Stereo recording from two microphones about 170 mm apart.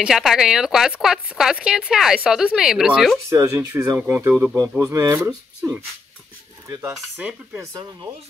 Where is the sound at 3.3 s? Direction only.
15° right (ahead or behind).